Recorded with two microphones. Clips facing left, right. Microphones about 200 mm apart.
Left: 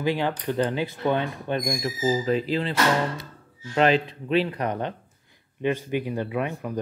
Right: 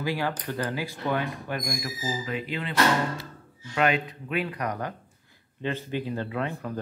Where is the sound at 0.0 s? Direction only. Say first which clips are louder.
Left 4 dB; 20° left (ahead or behind).